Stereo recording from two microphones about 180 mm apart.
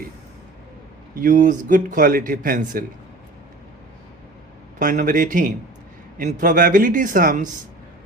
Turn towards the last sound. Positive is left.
turn(degrees=-50)  # may be behind; listen again after turning